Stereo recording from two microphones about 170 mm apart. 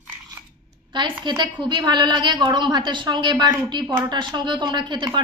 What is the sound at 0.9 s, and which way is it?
A woman's voice, 25° right (ahead or behind).